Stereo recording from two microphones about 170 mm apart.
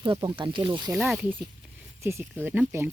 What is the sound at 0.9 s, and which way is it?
A woman's voice, 5° right (ahead or behind).